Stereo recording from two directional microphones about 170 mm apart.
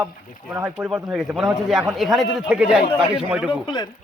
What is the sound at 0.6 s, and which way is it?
Speech, 15° right (ahead or behind).